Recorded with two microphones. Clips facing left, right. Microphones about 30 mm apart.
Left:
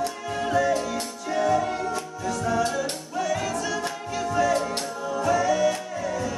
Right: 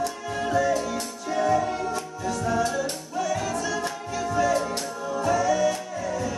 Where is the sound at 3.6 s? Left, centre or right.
Left.